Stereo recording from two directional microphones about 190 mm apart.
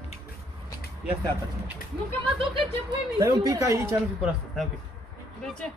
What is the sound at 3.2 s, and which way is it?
Speech, 15° right (ahead or behind).